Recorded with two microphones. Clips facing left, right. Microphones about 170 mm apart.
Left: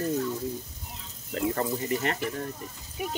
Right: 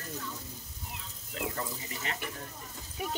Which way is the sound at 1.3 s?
60° left (ahead or behind).